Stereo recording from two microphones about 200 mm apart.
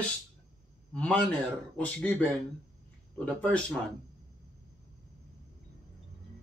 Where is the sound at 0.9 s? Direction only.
5° left (ahead or behind).